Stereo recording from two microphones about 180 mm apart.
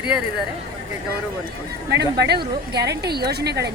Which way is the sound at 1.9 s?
70° right (ahead or behind).